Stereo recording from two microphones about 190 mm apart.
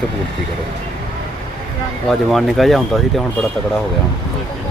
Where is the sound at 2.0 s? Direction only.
Centre (ahead or behind).